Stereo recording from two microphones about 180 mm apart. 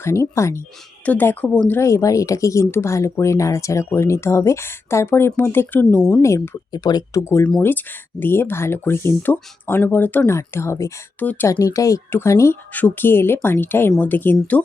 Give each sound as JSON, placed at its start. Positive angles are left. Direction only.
{"t": 0.0, "sound": "speech", "side_deg": 15}